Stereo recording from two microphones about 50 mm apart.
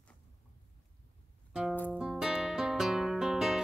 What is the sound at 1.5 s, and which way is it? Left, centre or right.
Music, centre.